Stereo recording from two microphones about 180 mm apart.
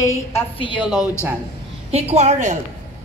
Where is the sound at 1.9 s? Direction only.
35° right (ahead or behind).